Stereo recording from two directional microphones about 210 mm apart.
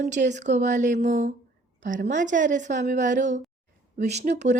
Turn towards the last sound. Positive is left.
turn(degrees=-35)  # may be behind; listen again after turning